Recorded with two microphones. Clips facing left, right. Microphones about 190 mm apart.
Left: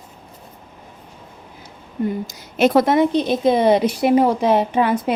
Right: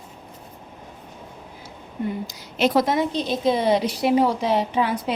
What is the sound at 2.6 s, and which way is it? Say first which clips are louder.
A woman's voice: left 5 dB; 55° left (ahead or behind).